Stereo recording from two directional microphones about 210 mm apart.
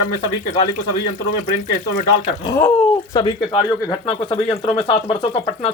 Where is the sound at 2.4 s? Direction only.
15° left (ahead or behind).